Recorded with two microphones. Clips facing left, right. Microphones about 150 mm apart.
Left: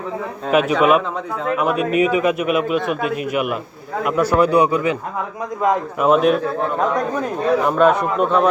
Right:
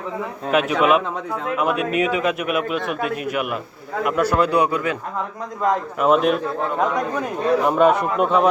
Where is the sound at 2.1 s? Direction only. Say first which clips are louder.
Left 4 dB; centre (ahead or behind).